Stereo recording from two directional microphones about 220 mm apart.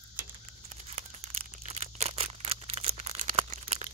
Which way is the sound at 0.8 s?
30° right (ahead or behind).